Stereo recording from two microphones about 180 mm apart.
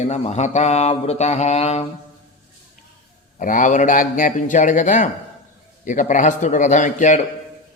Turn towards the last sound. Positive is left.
turn(degrees=45)  # may be behind; listen again after turning